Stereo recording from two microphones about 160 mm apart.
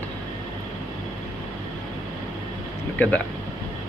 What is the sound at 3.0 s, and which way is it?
Speech, 10° left (ahead or behind).